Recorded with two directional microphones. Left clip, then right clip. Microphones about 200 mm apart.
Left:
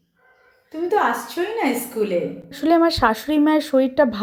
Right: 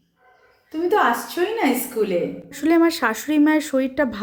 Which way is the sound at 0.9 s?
5° right (ahead or behind).